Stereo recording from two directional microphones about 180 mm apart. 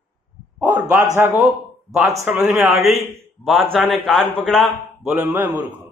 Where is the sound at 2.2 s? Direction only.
5° right (ahead or behind).